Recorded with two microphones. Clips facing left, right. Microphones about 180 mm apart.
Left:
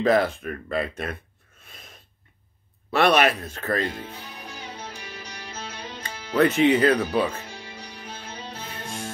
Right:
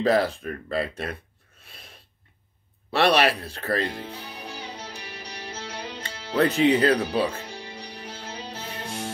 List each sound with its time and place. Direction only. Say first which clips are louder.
0.0 s speech: left 1 dB; 30° right (ahead or behind)
2.9 s speech: left 1 dB; 30° right (ahead or behind)
4.5 s music: even; 15° right (ahead or behind)
6.0 s speech: left 2 dB; 30° right (ahead or behind)